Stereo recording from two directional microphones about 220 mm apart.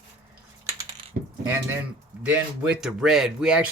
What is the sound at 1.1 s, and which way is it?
Mechanisms, 40° right (ahead or behind).